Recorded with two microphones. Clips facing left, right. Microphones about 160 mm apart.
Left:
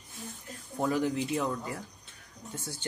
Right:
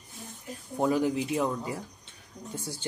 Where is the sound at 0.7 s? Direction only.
20° right (ahead or behind).